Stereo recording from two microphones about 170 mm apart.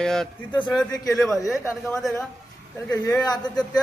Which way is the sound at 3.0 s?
25° left (ahead or behind).